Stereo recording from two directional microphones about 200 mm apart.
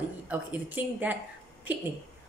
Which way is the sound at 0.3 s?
10° right (ahead or behind).